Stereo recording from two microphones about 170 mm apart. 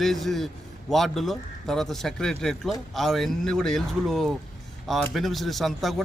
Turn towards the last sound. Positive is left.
turn(degrees=0)  # may be behind; listen again after turning